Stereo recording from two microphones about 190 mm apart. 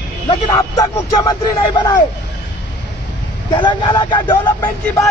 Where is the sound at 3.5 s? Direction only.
25° left (ahead or behind).